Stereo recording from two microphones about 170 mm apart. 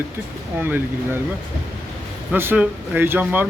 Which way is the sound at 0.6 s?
15° right (ahead or behind).